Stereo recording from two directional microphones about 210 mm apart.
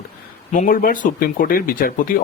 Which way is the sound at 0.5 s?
40° left (ahead or behind).